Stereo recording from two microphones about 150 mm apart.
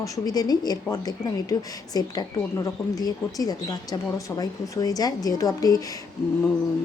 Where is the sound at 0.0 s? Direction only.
25° left (ahead or behind).